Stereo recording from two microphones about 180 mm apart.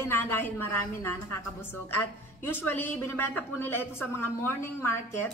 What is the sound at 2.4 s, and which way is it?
A woman's voice, 10° left (ahead or behind).